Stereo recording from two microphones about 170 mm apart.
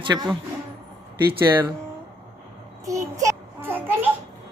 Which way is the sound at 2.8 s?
20° right (ahead or behind).